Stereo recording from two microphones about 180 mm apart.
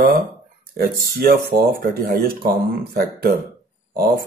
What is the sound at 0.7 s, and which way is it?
Speech, 60° right (ahead or behind).